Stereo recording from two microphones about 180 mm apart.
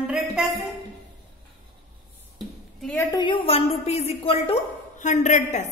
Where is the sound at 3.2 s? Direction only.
30° left (ahead or behind).